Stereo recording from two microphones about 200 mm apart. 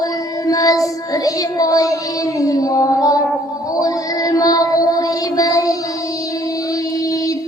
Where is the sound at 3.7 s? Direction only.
15° left (ahead or behind).